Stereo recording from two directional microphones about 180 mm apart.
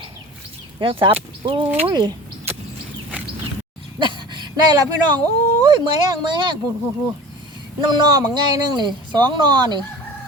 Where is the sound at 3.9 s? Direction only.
25° right (ahead or behind).